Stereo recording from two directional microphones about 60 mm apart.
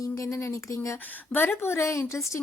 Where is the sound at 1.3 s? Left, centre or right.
Left.